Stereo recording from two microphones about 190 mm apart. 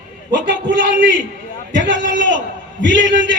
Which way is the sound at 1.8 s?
65° right (ahead or behind).